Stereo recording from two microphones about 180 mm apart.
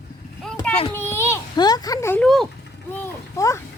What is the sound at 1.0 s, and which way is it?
A child's voice, 15° left (ahead or behind).